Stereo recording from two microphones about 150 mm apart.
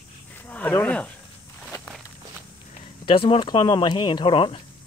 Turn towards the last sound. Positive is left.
turn(degrees=35)  # may be behind; listen again after turning